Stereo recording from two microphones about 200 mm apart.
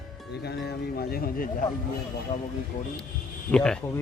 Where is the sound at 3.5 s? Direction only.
5° left (ahead or behind).